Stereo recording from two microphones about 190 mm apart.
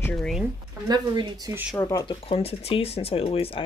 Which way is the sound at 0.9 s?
20° right (ahead or behind).